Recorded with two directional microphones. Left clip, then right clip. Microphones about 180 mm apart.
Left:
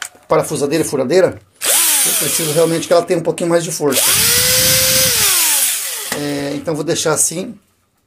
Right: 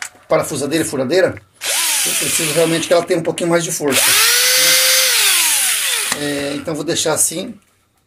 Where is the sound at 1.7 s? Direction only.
60° left (ahead or behind).